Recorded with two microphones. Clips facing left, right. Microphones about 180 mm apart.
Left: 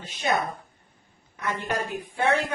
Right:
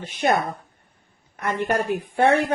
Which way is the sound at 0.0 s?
55° right (ahead or behind).